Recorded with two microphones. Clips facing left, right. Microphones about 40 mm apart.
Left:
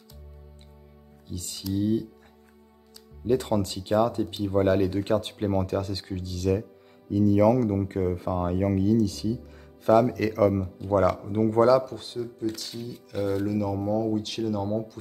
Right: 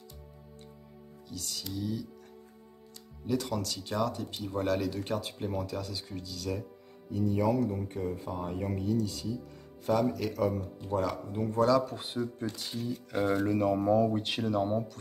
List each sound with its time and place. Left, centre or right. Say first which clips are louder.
1.2 s speech: left 5 dB; left
3.3 s speech: left 7 dB; left
4.9 s speech: left 8 dB; left
7.1 s speech: left 8 dB; left
9.8 s speech: left 8 dB; left
11.0 s speech: left 9 dB; left
11.8 s speech: left 1 dB; centre
13.1 s speech: left 2 dB; centre
13.5 s speech: even; right